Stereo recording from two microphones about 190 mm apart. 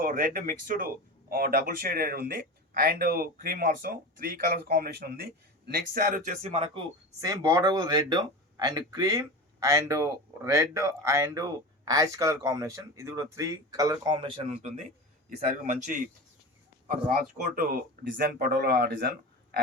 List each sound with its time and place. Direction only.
0.0 s speech: 45° right (ahead or behind)
6.4 s speech: 30° right (ahead or behind)
7.2 s speech: 15° right (ahead or behind)
15.4 s speech: 40° right (ahead or behind)
18.1 s speech: 55° right (ahead or behind)